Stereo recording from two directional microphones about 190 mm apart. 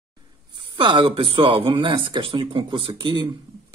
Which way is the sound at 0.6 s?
25° right (ahead or behind).